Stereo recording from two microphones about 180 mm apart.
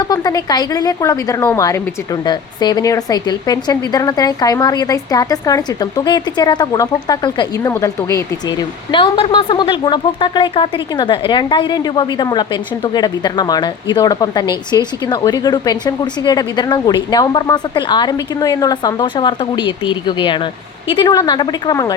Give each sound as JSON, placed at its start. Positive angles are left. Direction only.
{"t": 0.1, "sound": "a woman's voice", "side_deg": 20}
{"t": 8.9, "sound": "a woman's voice", "side_deg": 25}